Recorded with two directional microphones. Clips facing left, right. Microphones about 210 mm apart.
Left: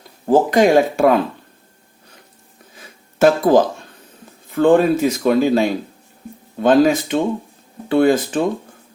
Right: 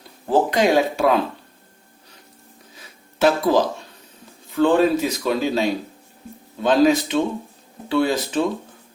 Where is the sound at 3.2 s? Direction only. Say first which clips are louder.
Left 5 dB; 50° left (ahead or behind).